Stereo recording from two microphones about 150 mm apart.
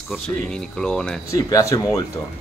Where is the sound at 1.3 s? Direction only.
25° left (ahead or behind).